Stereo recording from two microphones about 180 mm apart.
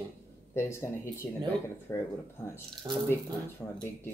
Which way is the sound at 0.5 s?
15° left (ahead or behind).